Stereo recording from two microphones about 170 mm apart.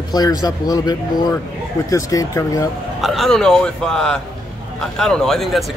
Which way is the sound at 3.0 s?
Centre (ahead or behind).